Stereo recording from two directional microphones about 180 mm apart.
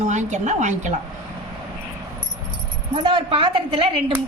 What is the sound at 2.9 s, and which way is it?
Speech, 30° right (ahead or behind).